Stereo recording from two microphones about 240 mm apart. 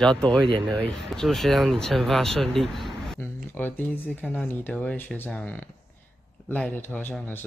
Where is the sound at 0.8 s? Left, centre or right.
Centre.